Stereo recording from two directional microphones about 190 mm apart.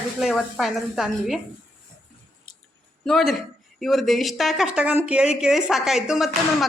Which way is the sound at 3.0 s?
Centre (ahead or behind).